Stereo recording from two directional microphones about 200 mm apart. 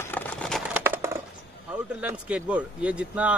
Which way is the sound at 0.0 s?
5° left (ahead or behind).